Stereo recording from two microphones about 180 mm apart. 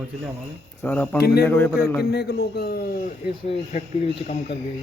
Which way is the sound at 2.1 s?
65° left (ahead or behind).